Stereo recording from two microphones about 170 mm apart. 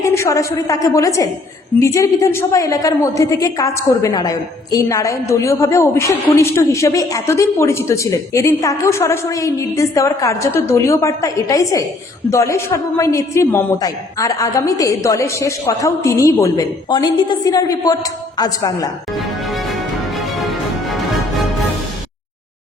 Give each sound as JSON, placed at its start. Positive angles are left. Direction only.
{"t": 0.0, "sound": "a woman's voice", "side_deg": 15}
{"t": 19.1, "sound": "music", "side_deg": 0}